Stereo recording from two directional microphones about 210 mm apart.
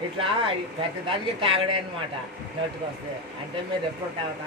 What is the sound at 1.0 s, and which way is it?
Speech, 25° right (ahead or behind).